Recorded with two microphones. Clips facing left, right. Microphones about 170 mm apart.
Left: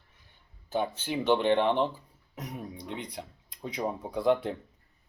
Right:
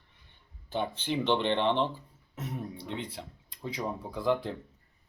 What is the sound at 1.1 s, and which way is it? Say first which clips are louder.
Speech: left 3 dB; 10° left (ahead or behind).